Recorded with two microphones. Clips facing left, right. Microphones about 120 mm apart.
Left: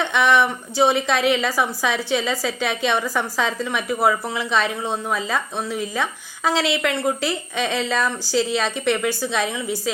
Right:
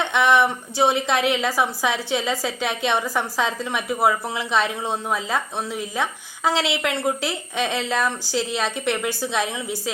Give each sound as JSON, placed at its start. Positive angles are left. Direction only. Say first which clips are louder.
{"t": 0.0, "sound": "a woman's voice", "louder": "even", "side_deg": -15}